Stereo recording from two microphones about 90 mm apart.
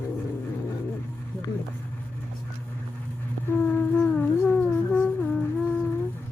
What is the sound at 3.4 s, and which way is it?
Humming, 20° left (ahead or behind).